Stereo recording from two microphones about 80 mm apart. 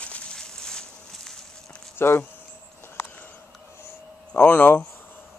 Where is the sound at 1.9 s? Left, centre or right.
Left.